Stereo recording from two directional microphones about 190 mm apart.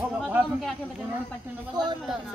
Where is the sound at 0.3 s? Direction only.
5° right (ahead or behind).